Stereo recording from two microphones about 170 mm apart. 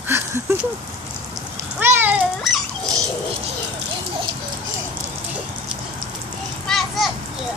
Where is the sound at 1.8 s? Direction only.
15° right (ahead or behind).